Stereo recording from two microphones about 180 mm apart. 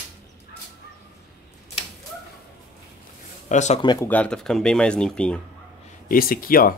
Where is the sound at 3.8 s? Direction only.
25° left (ahead or behind).